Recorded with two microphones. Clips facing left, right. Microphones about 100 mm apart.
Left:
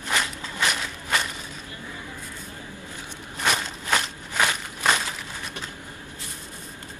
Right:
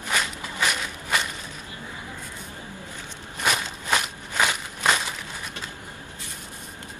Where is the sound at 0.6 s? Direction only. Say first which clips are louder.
Even; centre (ahead or behind).